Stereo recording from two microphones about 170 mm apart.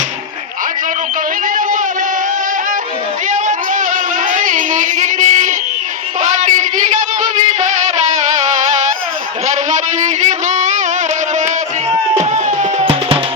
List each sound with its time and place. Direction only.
3.2 s child singing: 45° right (ahead or behind)
6.2 s music: 50° right (ahead or behind)
9.5 s music: 45° right (ahead or behind)
12.2 s music: 40° right (ahead or behind)